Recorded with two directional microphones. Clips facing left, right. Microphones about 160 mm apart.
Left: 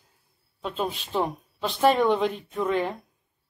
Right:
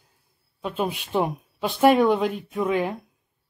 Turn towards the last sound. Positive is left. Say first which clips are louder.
# right 2 dB
turn(degrees=-5)  # may be behind; listen again after turning